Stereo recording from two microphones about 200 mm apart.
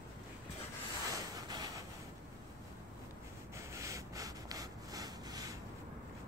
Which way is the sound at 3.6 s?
15° right (ahead or behind).